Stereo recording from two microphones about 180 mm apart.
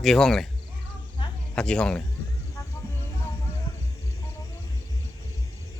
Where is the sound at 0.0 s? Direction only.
Centre (ahead or behind).